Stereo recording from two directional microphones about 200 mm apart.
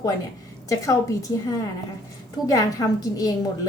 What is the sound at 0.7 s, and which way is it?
Speech, 15° left (ahead or behind).